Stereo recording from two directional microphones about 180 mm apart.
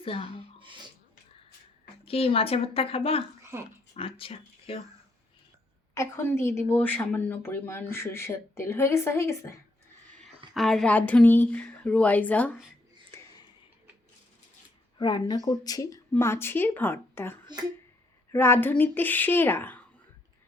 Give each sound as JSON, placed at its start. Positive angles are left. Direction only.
{"t": 0.0, "sound": "speech", "side_deg": 30}
{"t": 2.0, "sound": "speech", "side_deg": 30}
{"t": 3.5, "sound": "speech", "side_deg": -15}
{"t": 3.9, "sound": "speech", "side_deg": 30}
{"t": 5.9, "sound": "a woman's voice", "side_deg": 15}
{"t": 10.5, "sound": "a woman's voice", "side_deg": 0}
{"t": 14.9, "sound": "a woman's voice", "side_deg": 25}